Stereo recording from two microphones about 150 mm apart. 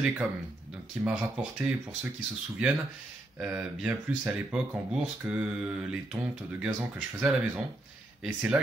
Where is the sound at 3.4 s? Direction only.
5° right (ahead or behind).